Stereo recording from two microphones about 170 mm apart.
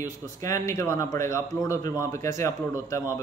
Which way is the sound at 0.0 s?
20° left (ahead or behind).